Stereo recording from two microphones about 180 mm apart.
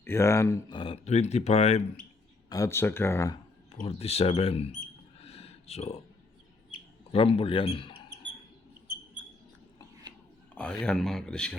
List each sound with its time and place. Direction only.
0.0 s speech: 15° left (ahead or behind)
0.8 s speech: 35° left (ahead or behind)
2.5 s speech: 15° left (ahead or behind)
3.7 s mouse: 35° left (ahead or behind)
7.1 s speech: 30° left (ahead or behind)
10.5 s speech: 5° left (ahead or behind)